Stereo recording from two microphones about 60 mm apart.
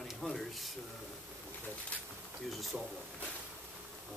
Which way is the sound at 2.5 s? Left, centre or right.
Centre.